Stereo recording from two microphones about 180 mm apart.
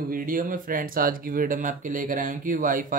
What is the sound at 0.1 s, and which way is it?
Speech, 50° right (ahead or behind).